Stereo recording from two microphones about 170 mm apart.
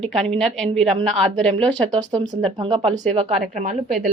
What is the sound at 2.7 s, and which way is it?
Speech, 35° right (ahead or behind).